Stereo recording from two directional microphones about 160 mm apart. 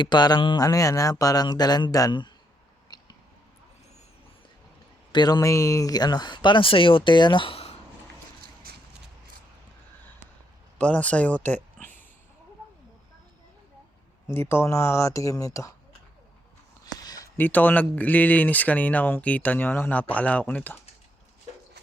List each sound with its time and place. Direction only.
0.0 s speech: 25° left (ahead or behind)
2.9 s a sound: 25° left (ahead or behind)
5.1 s speech: 25° left (ahead or behind)
10.8 s speech: 10° left (ahead or behind)
14.3 s speech: 15° left (ahead or behind)
16.8 s a sound: 25° left (ahead or behind)
17.3 s speech: 10° left (ahead or behind)